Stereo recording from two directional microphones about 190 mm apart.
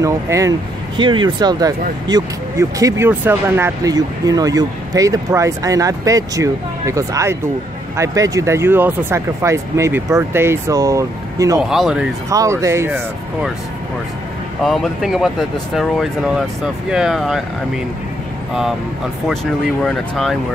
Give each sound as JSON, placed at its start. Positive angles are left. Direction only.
{"t": 0.0, "sound": "speech", "side_deg": -15}
{"t": 11.7, "sound": "speech", "side_deg": -5}
{"t": 12.3, "sound": "speech", "side_deg": -15}
{"t": 14.6, "sound": "speech", "side_deg": 0}
{"t": 18.5, "sound": "speech", "side_deg": 0}
{"t": 19.8, "sound": "speech", "side_deg": 0}